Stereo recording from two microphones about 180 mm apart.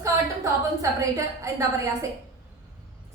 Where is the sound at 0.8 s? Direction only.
15° right (ahead or behind).